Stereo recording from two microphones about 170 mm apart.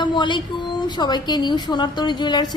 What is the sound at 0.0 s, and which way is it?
A woman's voice, 25° left (ahead or behind).